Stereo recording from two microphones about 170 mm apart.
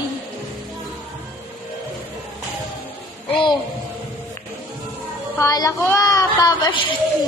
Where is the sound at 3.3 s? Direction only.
30° left (ahead or behind).